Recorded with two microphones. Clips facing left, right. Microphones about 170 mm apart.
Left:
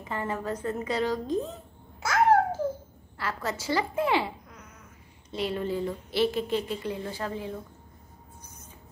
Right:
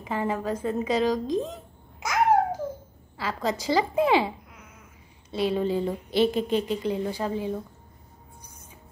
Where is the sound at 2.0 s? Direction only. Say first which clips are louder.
Even; 15° right (ahead or behind).